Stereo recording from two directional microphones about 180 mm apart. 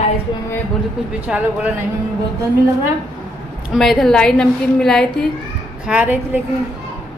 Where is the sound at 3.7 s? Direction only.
Centre (ahead or behind).